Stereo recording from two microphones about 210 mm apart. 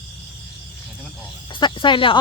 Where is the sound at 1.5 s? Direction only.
20° left (ahead or behind).